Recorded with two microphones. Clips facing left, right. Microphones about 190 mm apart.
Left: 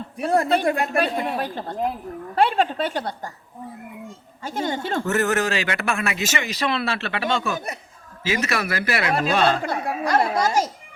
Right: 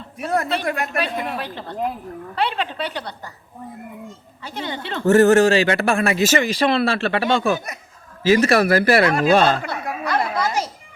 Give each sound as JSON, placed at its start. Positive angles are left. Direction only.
{"t": 0.2, "sound": "speech", "side_deg": 30}
{"t": 1.4, "sound": "a woman's voice", "side_deg": 45}
{"t": 4.4, "sound": "a woman's voice", "side_deg": 45}
{"t": 5.0, "sound": "a man's voice", "side_deg": -30}
{"t": 9.6, "sound": "speech", "side_deg": 35}
{"t": 10.3, "sound": "a child's voice", "side_deg": 45}